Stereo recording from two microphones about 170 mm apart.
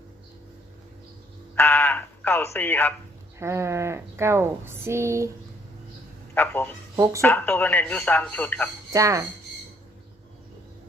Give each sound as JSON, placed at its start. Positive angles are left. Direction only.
{"t": 1.5, "sound": "speech", "side_deg": 10}
{"t": 3.3, "sound": "speech", "side_deg": -15}
{"t": 6.3, "sound": "speech", "side_deg": 10}
{"t": 6.9, "sound": "speech", "side_deg": -20}
{"t": 7.2, "sound": "speech", "side_deg": 10}
{"t": 8.9, "sound": "speech", "side_deg": -20}